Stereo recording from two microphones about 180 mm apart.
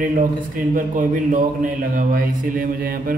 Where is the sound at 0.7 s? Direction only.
45° right (ahead or behind).